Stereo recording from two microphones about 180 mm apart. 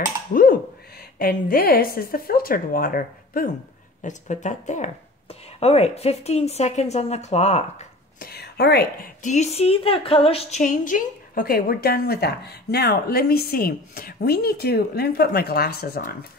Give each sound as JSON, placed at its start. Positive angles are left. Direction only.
{"t": 0.3, "sound": "a sound", "side_deg": 55}
{"t": 1.1, "sound": "speech", "side_deg": 55}
{"t": 4.0, "sound": "a woman's voice", "side_deg": 40}
{"t": 8.2, "sound": "speech", "side_deg": 60}
{"t": 9.2, "sound": "speech", "side_deg": 40}